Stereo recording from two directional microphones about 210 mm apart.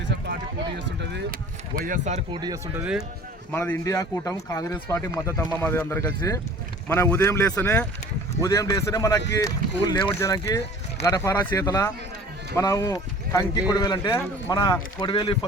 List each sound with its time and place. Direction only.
1.7 s speech: 40° right (ahead or behind)
2.4 s speech: 15° right (ahead or behind)
3.5 s speech: 10° left (ahead or behind)